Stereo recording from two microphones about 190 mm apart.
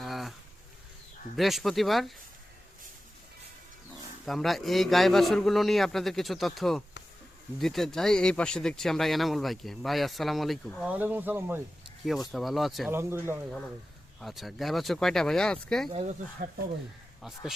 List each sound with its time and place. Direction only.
0.0 s a sound: centre (ahead or behind)
1.4 s speech: centre (ahead or behind)
4.3 s speech: centre (ahead or behind)
10.9 s speech: 10° right (ahead or behind)
12.3 s speech: centre (ahead or behind)
12.9 s speech: 10° right (ahead or behind)
14.2 s speech: centre (ahead or behind)
15.9 s speech: 30° right (ahead or behind)
16.4 s speech: 45° right (ahead or behind)